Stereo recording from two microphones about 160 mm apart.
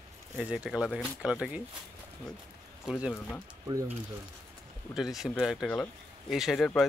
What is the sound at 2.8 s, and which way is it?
Speech, centre (ahead or behind).